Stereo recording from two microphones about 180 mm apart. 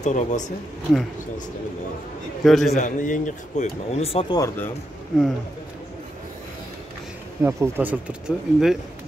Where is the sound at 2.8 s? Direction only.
45° left (ahead or behind).